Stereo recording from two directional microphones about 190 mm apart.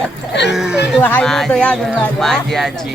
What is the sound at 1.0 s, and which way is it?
Speech, 10° left (ahead or behind).